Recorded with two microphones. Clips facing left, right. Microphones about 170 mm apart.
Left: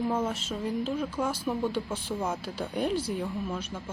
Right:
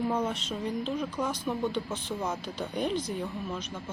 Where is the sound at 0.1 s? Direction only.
5° left (ahead or behind).